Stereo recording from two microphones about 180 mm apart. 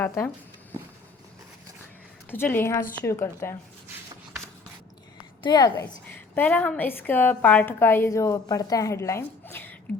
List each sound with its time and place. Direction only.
0.0 s a woman's voice: 15° left (ahead or behind)
2.3 s a woman's voice: 10° left (ahead or behind)
5.4 s a woman's voice: 25° left (ahead or behind)
6.3 s a woman's voice: 10° left (ahead or behind)